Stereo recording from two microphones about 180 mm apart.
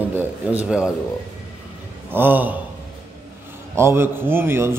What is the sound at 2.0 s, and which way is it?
Speech, 10° right (ahead or behind).